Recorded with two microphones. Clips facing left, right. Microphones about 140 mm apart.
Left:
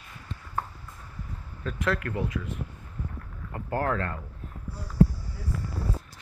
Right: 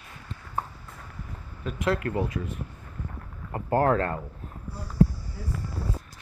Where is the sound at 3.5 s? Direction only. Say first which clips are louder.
Right 6 dB; 30° right (ahead or behind).